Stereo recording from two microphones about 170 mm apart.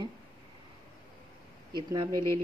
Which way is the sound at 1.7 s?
25° right (ahead or behind).